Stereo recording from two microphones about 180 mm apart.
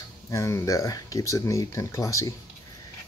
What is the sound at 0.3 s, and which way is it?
Speech, 15° left (ahead or behind).